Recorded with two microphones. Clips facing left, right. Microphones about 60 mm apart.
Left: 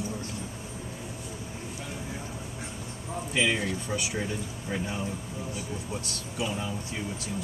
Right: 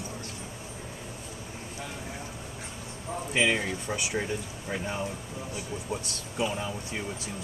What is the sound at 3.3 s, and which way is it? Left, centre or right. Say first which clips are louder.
Speech: right 1 dB; centre.